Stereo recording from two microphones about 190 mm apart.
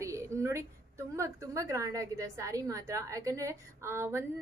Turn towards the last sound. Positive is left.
turn(degrees=-15)  # may be behind; listen again after turning